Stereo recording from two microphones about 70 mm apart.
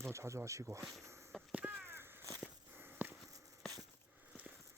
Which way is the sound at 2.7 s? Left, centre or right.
Right.